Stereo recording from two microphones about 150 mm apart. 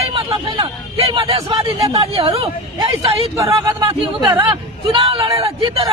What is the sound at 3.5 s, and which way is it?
A man's voice, 30° right (ahead or behind).